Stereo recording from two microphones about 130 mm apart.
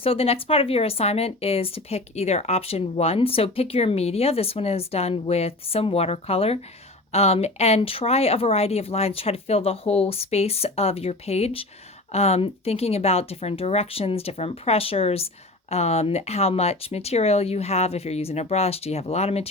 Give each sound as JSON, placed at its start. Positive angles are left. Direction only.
{"t": 0.0, "sound": "speech", "side_deg": 50}